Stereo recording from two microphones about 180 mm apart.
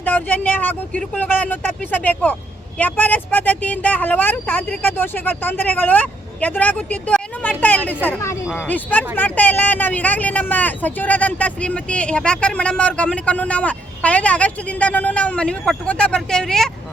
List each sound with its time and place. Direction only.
0.0 s speech: 10° left (ahead or behind)